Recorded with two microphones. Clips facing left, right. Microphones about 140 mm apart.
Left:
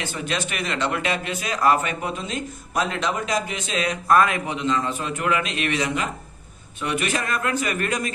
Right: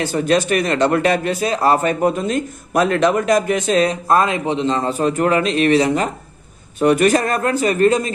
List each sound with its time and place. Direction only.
0.0 s a man's voice: 45° right (ahead or behind)